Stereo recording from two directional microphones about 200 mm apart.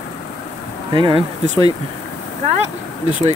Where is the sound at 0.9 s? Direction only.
25° right (ahead or behind).